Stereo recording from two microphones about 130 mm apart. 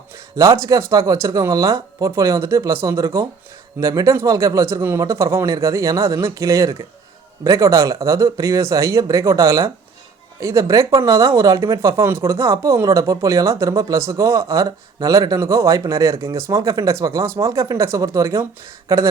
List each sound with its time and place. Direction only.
0.3 s speech: 25° right (ahead or behind)